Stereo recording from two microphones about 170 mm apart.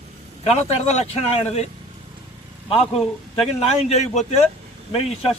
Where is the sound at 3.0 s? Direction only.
Centre (ahead or behind).